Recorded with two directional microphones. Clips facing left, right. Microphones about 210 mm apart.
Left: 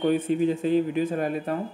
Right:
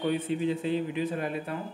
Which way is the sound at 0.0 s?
45° left (ahead or behind).